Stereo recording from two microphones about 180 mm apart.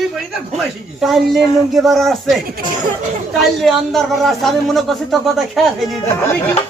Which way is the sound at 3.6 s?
Centre (ahead or behind).